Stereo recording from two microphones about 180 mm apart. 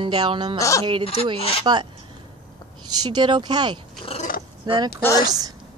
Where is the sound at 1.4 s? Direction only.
35° left (ahead or behind).